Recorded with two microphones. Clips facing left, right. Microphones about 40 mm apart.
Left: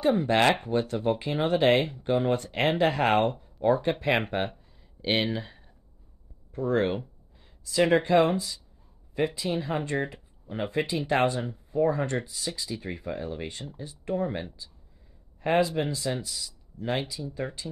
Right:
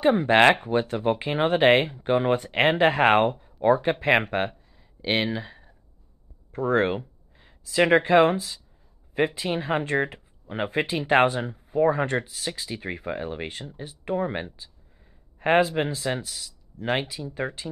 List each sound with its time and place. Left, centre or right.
0.0 s speech: right
2.3 s speech: centre
3.7 s speech: centre
6.5 s speech: right
7.3 s a sound: right
8.2 s speech: right
15.3 s a sound: right
15.7 s speech: right